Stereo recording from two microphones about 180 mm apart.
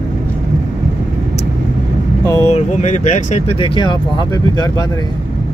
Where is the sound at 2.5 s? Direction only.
40° left (ahead or behind); by 4.8 s 25° left (ahead or behind).